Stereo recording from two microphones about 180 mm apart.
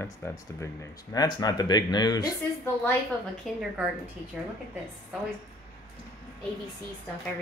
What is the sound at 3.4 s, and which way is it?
Speech, centre (ahead or behind).